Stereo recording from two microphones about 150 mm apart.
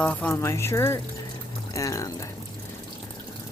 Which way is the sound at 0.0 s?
10° left (ahead or behind).